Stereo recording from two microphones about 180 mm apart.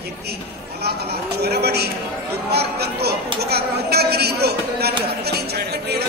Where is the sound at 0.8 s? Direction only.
65° right (ahead or behind).